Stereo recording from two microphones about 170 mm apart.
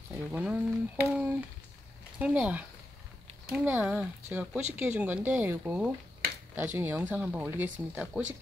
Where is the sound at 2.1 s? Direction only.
5° right (ahead or behind).